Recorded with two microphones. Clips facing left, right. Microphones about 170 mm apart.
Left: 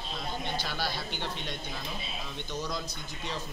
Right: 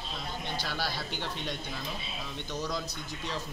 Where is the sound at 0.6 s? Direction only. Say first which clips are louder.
Even; 5° right (ahead or behind).